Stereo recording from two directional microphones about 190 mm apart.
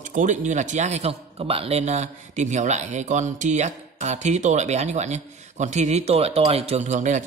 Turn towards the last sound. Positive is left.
turn(degrees=-40)  # may be behind; listen again after turning